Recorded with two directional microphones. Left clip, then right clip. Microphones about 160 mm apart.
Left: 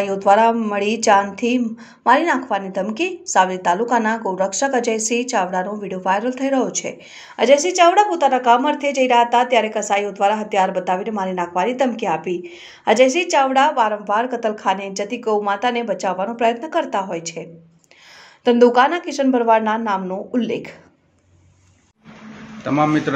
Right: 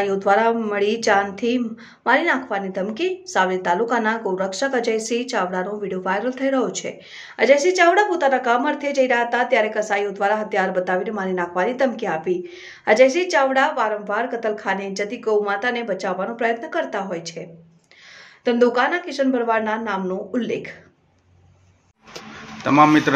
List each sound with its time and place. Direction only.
0.0 s a woman's voice: 15° left (ahead or behind)
18.4 s speech: 25° left (ahead or behind)
22.6 s a woman's voice: 20° left (ahead or behind)